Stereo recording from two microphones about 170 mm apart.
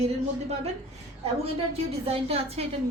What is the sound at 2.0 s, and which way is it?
Speech, 35° right (ahead or behind).